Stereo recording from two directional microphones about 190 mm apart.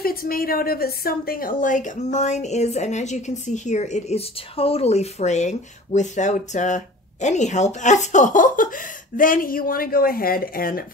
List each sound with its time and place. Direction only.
0.0 s a woman's voice: 50° left (ahead or behind)